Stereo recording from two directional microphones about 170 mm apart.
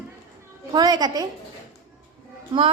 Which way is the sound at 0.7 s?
25° right (ahead or behind).